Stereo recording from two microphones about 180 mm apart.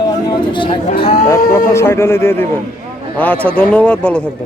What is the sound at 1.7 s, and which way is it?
Speech, 15° left (ahead or behind).